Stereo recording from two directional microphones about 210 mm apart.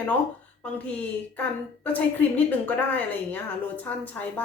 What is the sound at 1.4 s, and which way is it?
A woman's voice, 10° left (ahead or behind).